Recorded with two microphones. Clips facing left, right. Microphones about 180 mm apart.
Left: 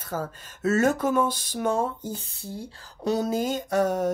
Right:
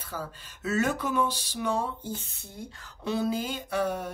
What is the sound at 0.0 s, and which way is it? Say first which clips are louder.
Speech: left 6 dB; 45° left (ahead or behind).